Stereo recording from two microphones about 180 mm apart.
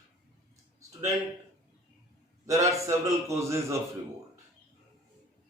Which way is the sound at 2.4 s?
15° right (ahead or behind).